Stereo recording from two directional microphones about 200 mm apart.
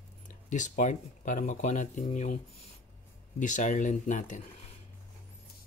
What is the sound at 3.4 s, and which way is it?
Speech, 40° left (ahead or behind).